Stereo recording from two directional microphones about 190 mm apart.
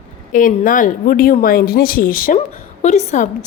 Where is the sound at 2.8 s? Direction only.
35° left (ahead or behind).